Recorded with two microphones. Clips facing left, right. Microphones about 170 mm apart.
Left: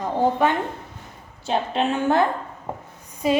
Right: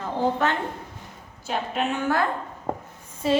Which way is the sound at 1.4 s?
30° left (ahead or behind).